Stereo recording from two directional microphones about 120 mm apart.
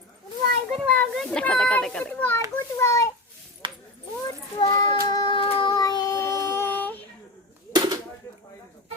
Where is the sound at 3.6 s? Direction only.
40° right (ahead or behind).